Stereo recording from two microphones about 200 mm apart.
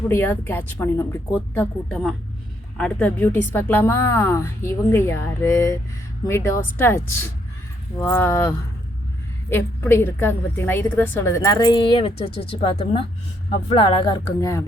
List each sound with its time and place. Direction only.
0.1 s a woman's voice: 10° left (ahead or behind)